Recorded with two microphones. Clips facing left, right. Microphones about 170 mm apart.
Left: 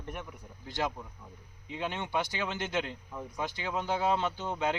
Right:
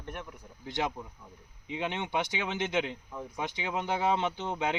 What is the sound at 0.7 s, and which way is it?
Speech, 20° right (ahead or behind).